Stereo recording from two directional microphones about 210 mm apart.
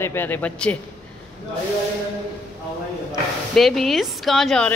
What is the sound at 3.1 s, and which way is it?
Speech, centre (ahead or behind).